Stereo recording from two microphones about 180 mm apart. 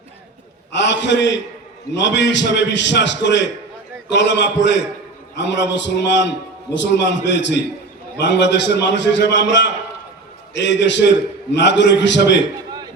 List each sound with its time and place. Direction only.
0.7 s a man's voice: 80° left